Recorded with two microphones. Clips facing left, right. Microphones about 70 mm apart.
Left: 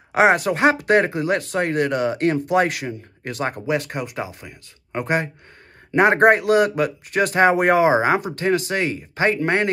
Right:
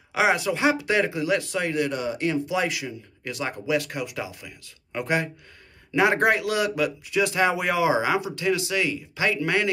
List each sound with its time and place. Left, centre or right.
0.1 s speech: left